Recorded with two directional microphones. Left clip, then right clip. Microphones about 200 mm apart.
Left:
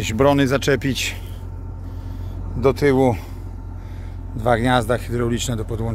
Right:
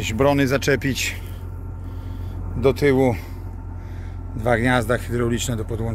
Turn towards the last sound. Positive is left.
turn(degrees=10)  # may be behind; listen again after turning